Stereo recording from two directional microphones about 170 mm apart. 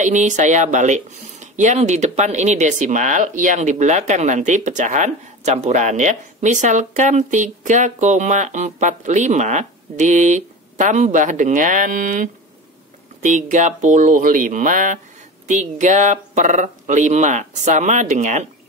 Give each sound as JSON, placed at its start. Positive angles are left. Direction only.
{"t": 0.0, "sound": "speech", "side_deg": -45}